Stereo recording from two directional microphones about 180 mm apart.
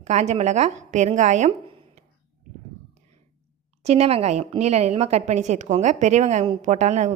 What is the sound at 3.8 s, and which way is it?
A woman's voice, 35° right (ahead or behind).